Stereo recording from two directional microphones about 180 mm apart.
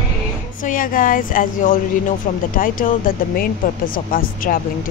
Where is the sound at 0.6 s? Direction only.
50° left (ahead or behind).